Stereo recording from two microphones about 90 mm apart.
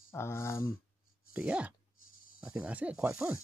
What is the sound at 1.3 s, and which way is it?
Speech, 15° right (ahead or behind).